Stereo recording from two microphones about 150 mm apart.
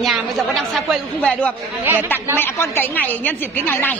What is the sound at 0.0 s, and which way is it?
Speech, centre (ahead or behind).